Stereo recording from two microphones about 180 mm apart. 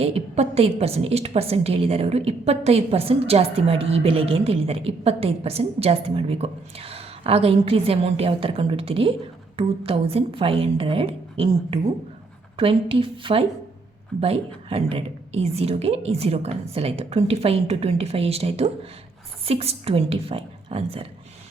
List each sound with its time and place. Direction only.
0.0 s a woman's voice: 35° right (ahead or behind)